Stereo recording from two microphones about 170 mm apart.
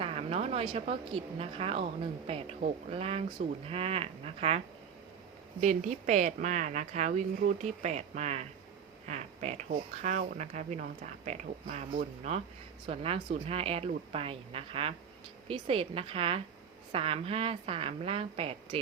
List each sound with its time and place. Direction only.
0.0 s speech: 35° right (ahead or behind)